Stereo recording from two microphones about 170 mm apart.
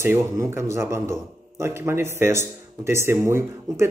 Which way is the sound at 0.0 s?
15° right (ahead or behind).